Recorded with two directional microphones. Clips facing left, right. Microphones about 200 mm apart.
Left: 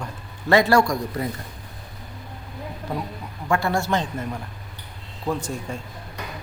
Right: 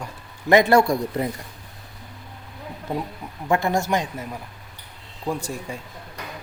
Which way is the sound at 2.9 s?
20° right (ahead or behind).